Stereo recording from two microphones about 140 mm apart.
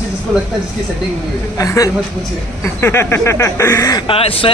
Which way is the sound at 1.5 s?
25° left (ahead or behind).